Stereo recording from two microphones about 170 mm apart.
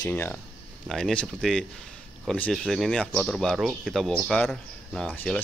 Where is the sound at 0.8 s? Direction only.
Centre (ahead or behind).